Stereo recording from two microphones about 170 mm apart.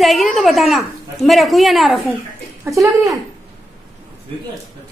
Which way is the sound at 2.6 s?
20° right (ahead or behind).